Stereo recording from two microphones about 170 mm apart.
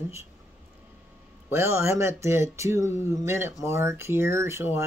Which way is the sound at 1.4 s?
15° right (ahead or behind).